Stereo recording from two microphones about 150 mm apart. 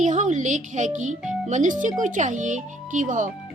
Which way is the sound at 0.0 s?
55° right (ahead or behind).